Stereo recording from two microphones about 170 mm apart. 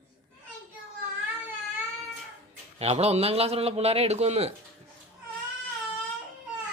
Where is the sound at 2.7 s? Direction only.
35° right (ahead or behind).